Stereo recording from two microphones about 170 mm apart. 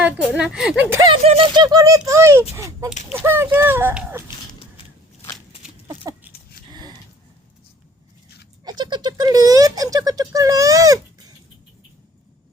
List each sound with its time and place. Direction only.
0.0 s a woman's voice: 5° right (ahead or behind)
1.1 s a woman's voice: 35° right (ahead or behind); by 4.3 s 10° right (ahead or behind)
5.9 s a sound: 25° right (ahead or behind)
8.6 s speech: 25° right (ahead or behind)